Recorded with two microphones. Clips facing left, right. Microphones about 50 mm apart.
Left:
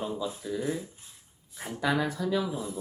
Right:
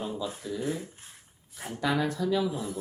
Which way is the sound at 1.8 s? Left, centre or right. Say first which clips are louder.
Even; centre.